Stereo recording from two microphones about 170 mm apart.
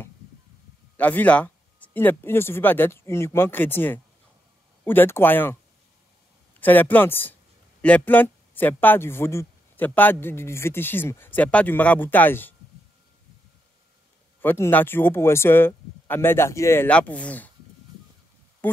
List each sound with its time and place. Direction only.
0.9 s speech: 10° left (ahead or behind)
6.6 s speech: 10° left (ahead or behind)
14.4 s speech: 10° left (ahead or behind)
18.6 s a sound: 10° left (ahead or behind)